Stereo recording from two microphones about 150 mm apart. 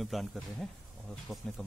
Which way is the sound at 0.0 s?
Centre (ahead or behind).